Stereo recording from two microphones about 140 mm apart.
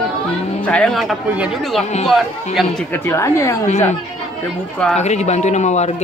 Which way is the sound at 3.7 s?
55° left (ahead or behind).